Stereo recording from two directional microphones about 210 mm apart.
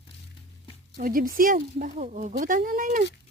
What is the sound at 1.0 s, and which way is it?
A woman's voice, 40° right (ahead or behind).